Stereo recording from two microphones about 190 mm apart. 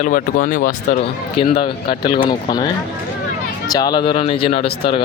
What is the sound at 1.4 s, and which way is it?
Speech, 30° left (ahead or behind).